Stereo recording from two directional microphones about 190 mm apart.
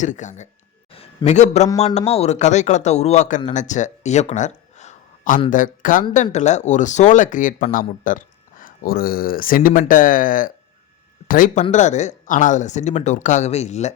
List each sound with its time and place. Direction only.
0.0 s a man's voice: 40° left (ahead or behind)